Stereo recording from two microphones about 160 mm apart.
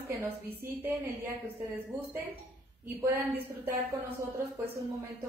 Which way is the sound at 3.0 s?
15° right (ahead or behind).